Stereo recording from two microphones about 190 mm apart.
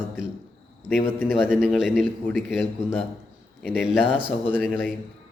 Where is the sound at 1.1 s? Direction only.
10° left (ahead or behind).